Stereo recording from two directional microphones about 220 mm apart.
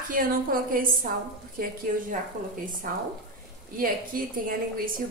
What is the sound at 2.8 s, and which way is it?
A woman's voice, 40° right (ahead or behind).